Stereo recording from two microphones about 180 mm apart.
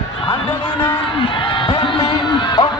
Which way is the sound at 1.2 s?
30° left (ahead or behind).